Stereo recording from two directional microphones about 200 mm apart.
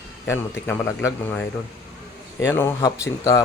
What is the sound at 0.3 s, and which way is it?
Speech, 10° left (ahead or behind).